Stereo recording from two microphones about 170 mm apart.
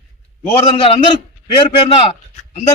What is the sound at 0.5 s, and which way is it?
Speech, 35° left (ahead or behind).